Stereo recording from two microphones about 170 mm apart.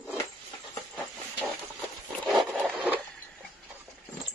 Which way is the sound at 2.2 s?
Centre (ahead or behind).